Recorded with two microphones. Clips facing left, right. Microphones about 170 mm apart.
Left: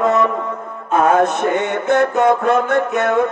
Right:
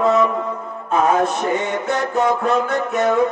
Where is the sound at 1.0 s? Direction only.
60° left (ahead or behind).